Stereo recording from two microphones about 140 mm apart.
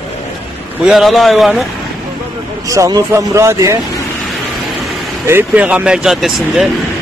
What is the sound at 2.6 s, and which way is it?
A man's voice, 25° right (ahead or behind).